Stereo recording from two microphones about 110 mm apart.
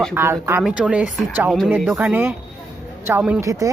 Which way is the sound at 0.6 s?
5° right (ahead or behind).